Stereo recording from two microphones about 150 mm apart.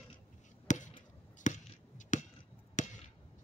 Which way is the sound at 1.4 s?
55° left (ahead or behind).